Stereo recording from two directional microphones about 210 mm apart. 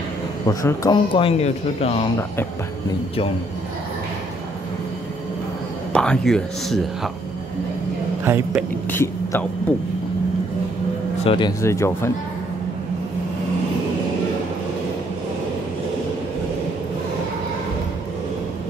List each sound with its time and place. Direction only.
0.5 s speech: 15° left (ahead or behind)
5.9 s speech: 5° left (ahead or behind)
8.2 s a woman's voice: 10° right (ahead or behind)
8.9 s speech: 10° left (ahead or behind)
11.2 s speech: 20° left (ahead or behind)